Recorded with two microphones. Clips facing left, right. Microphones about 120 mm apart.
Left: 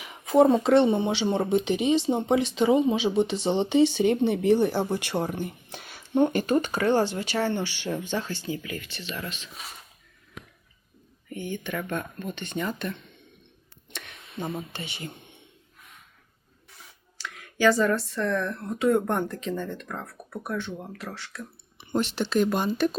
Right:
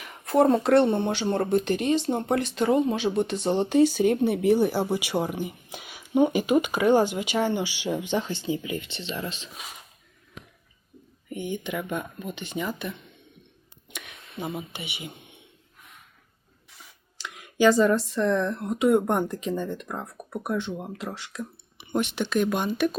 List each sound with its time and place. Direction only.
0.0 s speech: centre (ahead or behind); by 9.5 s 30° right (ahead or behind)
11.3 s speech: 15° right (ahead or behind)
13.9 s a sound: 10° right (ahead or behind)
14.7 s speech: 15° right (ahead or behind)
17.2 s speech: 20° right (ahead or behind)
22.1 s speech: centre (ahead or behind)